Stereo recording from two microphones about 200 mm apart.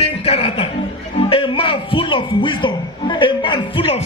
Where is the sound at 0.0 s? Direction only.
30° left (ahead or behind).